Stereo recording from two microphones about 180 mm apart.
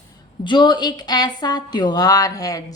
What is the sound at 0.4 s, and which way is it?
Speech, 25° left (ahead or behind).